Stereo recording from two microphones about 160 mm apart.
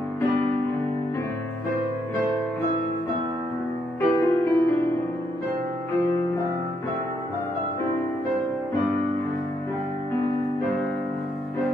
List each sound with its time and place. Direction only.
4.0 s music: 15° left (ahead or behind)